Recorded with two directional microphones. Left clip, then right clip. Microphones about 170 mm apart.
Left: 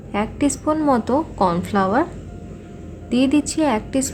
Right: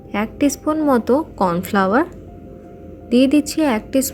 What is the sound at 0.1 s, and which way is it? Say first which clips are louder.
A woman's voice: right 2 dB; 20° right (ahead or behind).